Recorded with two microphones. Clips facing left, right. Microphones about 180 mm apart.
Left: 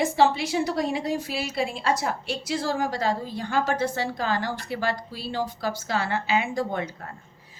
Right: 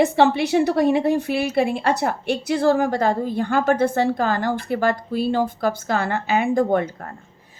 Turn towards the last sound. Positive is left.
turn(degrees=-55)  # may be behind; listen again after turning